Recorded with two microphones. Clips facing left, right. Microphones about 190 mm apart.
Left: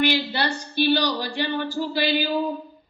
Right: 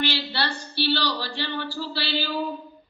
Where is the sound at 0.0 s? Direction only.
15° left (ahead or behind).